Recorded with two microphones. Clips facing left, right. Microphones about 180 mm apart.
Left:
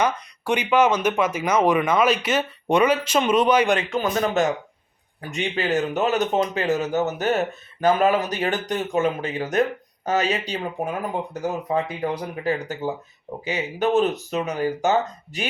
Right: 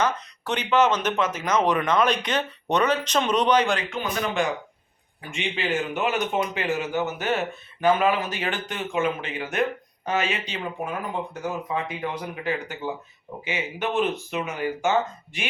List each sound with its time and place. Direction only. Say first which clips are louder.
0.0 s speech: left 2 dB; 10° left (ahead or behind)
3.8 s speech: left 5 dB; 35° left (ahead or behind)